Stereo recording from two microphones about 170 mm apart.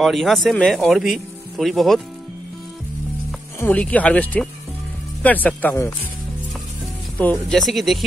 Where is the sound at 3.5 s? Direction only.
10° left (ahead or behind).